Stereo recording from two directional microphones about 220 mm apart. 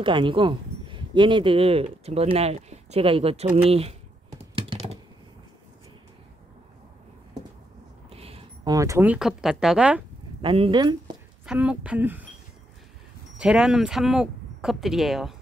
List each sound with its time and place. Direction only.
0.0 s speech: 20° right (ahead or behind)
8.1 s speech: 25° right (ahead or behind); by 10.0 s 5° right (ahead or behind)
10.4 s speech: 25° right (ahead or behind)
11.4 s speech: 5° right (ahead or behind)
13.4 s speech: 5° right (ahead or behind)